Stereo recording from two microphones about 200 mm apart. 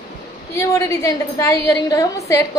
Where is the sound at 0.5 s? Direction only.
15° left (ahead or behind).